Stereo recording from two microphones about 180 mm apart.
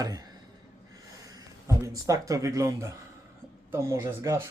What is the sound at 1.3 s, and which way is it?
Speech, 20° right (ahead or behind).